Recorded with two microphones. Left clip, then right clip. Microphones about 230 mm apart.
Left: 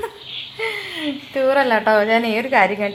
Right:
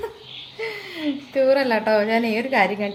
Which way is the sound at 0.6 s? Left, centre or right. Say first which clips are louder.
Left 5 dB; centre.